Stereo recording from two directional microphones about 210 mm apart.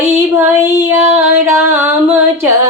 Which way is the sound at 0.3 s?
10° right (ahead or behind).